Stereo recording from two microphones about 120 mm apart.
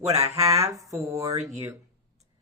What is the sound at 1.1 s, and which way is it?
Speech, 65° right (ahead or behind).